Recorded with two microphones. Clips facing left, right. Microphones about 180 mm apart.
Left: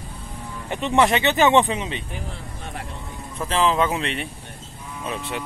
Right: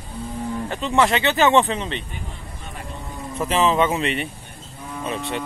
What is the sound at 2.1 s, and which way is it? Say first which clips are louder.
Vehicle: left 2 dB; 90° left.